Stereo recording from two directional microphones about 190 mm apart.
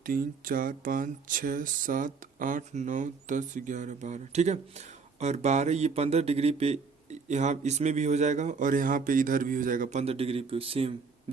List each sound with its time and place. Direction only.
0.0 s speech: 50° right (ahead or behind); by 10.9 s 30° right (ahead or behind)